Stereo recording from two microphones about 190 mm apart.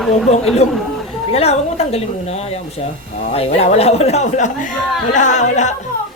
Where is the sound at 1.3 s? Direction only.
30° left (ahead or behind).